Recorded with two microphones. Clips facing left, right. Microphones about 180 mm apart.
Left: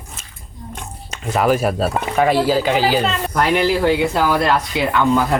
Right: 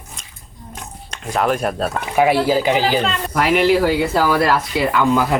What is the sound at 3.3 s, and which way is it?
Speech, centre (ahead or behind).